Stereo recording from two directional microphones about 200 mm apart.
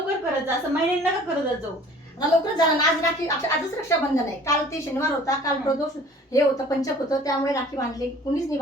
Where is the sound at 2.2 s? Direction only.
20° left (ahead or behind).